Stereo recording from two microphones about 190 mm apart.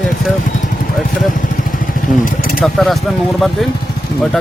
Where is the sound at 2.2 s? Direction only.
50° left (ahead or behind).